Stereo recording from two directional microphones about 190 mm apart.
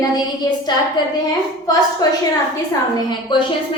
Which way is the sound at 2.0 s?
20° left (ahead or behind).